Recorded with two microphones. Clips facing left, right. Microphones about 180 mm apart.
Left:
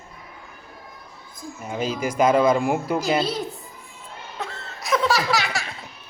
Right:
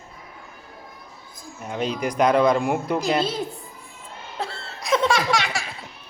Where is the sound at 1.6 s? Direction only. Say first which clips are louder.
Even; centre (ahead or behind).